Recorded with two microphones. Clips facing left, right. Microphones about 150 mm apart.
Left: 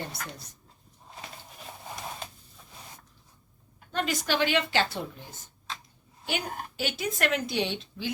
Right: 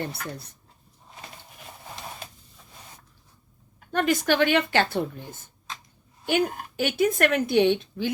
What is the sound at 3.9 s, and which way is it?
A woman's voice, 55° right (ahead or behind).